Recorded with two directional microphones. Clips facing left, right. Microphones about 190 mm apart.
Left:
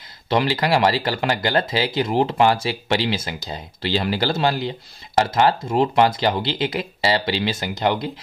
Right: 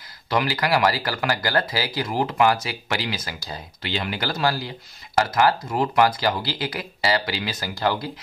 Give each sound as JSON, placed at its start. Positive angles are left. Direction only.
{"t": 0.3, "sound": "speech", "side_deg": 25}